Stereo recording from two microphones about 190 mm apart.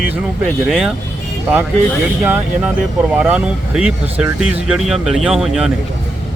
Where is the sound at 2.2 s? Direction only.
10° right (ahead or behind).